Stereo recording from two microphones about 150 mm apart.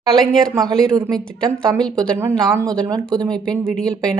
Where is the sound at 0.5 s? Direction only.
25° right (ahead or behind).